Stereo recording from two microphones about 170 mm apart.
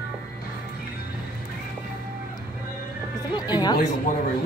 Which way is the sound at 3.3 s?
25° left (ahead or behind).